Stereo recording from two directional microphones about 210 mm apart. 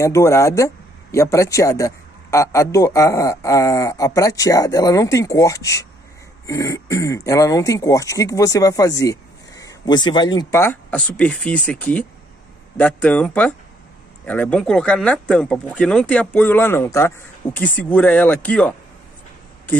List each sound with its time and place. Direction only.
0.0 s speech: 15° left (ahead or behind)